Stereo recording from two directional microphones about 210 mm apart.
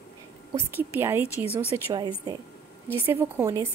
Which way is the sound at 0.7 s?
10° right (ahead or behind).